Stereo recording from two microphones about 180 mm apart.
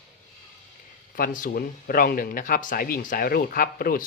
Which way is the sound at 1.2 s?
50° left (ahead or behind).